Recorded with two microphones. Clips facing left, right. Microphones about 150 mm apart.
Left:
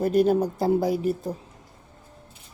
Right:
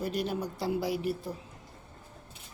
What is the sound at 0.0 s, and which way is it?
Speech, 50° left (ahead or behind).